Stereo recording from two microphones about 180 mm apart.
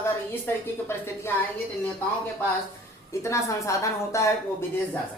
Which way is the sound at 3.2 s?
15° left (ahead or behind).